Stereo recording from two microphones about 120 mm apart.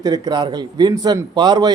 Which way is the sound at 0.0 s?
35° right (ahead or behind).